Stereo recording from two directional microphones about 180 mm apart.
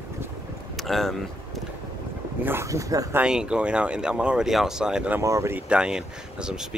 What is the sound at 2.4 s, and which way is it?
Speech, 15° right (ahead or behind).